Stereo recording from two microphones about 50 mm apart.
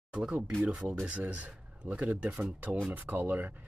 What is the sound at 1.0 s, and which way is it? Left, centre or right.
Speech, right.